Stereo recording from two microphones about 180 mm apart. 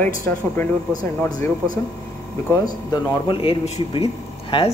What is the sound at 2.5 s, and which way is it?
Speech, 20° left (ahead or behind).